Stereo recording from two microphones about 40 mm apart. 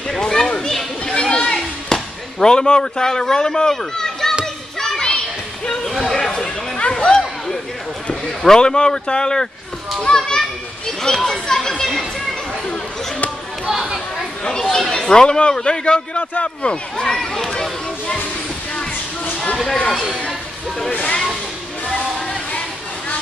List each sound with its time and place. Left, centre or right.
0.3 s chatter: centre
1.2 s children playing: left
1.9 s speech: centre
4.7 s children playing: centre
5.9 s chatter: centre
7.0 s a sound: left
8.5 s speech: centre
10.0 s children playing: centre
11.1 s speech: centre
13.7 s chatter: centre
14.6 s speech: centre; by 16.7 s left
17.0 s speech: centre